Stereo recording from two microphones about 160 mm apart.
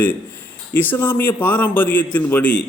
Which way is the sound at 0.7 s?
10° left (ahead or behind).